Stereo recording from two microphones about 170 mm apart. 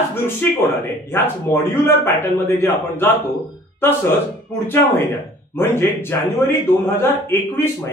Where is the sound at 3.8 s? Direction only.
15° left (ahead or behind).